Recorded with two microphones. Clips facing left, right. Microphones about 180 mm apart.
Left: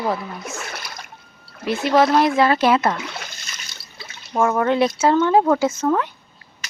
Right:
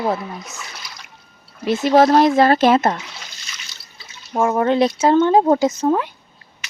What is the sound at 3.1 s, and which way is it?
Water, 55° left (ahead or behind).